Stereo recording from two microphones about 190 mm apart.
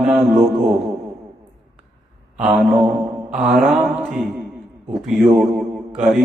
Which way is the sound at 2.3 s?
5° right (ahead or behind).